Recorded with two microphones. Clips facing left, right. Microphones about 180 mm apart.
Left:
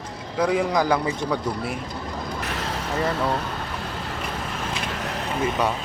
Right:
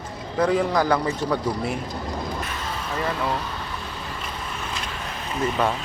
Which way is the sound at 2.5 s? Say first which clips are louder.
Left 2 dB; 75° left (ahead or behind).